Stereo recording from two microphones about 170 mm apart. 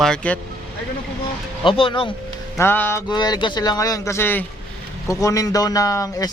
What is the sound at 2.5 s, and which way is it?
Music, 10° left (ahead or behind).